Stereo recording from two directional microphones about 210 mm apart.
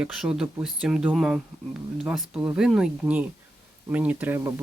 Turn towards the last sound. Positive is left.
turn(degrees=-10)  # may be behind; listen again after turning